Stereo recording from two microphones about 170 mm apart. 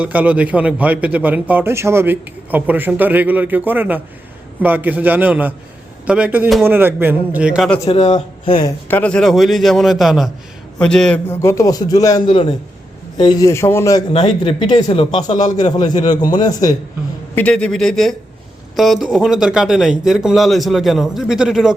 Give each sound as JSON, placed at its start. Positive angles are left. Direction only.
{"t": 0.0, "sound": "a man's voice", "side_deg": -10}
{"t": 8.0, "sound": "speech", "side_deg": 35}
{"t": 8.6, "sound": "a man's voice", "side_deg": 10}
{"t": 14.1, "sound": "a man's voice", "side_deg": 35}
{"t": 17.3, "sound": "speech", "side_deg": 5}